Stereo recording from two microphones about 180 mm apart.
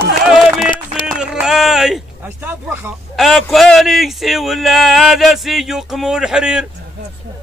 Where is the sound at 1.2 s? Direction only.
5° right (ahead or behind).